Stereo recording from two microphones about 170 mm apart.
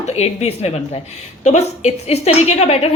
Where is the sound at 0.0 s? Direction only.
40° left (ahead or behind).